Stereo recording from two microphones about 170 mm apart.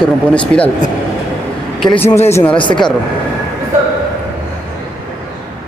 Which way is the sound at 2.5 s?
30° left (ahead or behind).